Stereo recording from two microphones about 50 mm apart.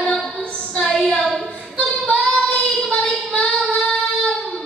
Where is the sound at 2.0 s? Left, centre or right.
Centre.